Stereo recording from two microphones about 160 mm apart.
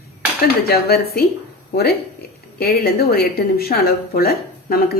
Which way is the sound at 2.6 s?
75° left (ahead or behind).